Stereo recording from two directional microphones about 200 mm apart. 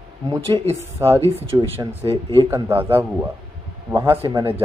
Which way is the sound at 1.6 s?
30° right (ahead or behind).